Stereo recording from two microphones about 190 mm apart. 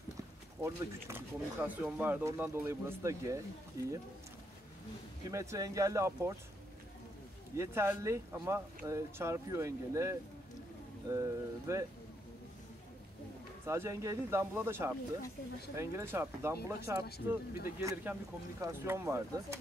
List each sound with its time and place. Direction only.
0.6 s speech: 15° right (ahead or behind)
5.3 s speech: 15° right (ahead or behind)
7.5 s speech: 15° right (ahead or behind)
13.7 s speech: 15° right (ahead or behind)